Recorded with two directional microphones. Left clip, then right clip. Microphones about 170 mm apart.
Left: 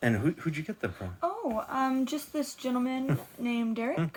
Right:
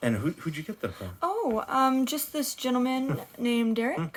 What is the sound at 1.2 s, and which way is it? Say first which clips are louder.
Speech: right 4 dB; 55° right (ahead or behind).